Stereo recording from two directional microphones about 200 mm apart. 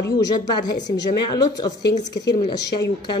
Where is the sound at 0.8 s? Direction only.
20° left (ahead or behind).